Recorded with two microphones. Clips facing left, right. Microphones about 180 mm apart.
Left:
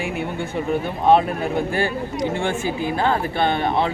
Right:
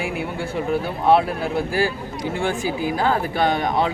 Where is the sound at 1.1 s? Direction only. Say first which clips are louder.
Left 1 dB; 5° right (ahead or behind).